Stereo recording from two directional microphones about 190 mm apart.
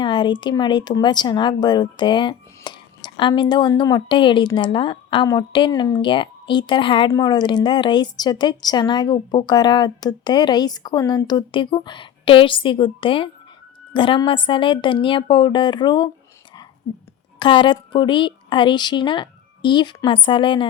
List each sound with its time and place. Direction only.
0.0 s speech: 25° left (ahead or behind)
17.4 s speech: 25° left (ahead or behind)